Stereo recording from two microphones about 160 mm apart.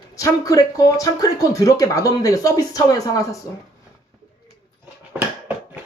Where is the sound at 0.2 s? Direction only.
20° left (ahead or behind).